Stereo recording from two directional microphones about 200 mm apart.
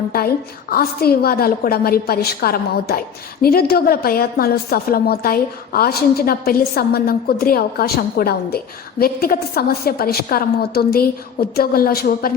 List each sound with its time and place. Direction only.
0.1 s a woman's voice: 50° left (ahead or behind)